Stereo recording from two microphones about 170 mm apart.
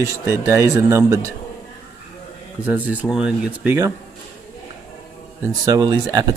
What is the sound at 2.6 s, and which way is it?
Speech, 10° right (ahead or behind).